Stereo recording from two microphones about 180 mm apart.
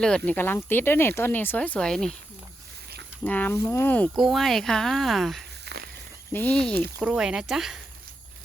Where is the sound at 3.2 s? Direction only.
10° left (ahead or behind).